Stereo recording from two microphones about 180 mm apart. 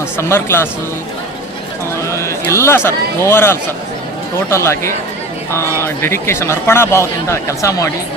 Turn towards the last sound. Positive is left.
turn(degrees=15)  # may be behind; listen again after turning